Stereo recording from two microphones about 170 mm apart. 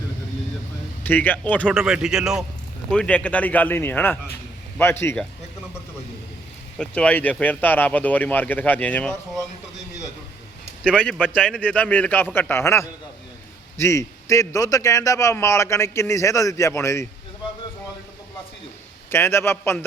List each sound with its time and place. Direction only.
1.0 s a man's voice: 10° left (ahead or behind)
1.6 s a man's voice: 5° right (ahead or behind); by 5.2 s 15° left (ahead or behind)
6.7 s a man's voice: 5° left (ahead or behind)
11.0 s a man's voice: 5° left (ahead or behind)
19.1 s a man's voice: 15° left (ahead or behind)